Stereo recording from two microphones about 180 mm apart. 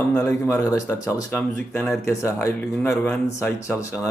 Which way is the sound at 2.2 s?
15° left (ahead or behind).